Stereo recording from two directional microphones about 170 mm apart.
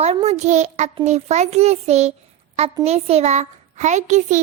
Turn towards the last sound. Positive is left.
turn(degrees=-45)  # may be behind; listen again after turning